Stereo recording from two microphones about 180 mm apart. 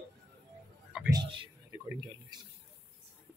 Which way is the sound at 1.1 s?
25° right (ahead or behind).